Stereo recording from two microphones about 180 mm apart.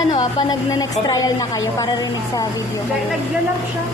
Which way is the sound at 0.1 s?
25° left (ahead or behind).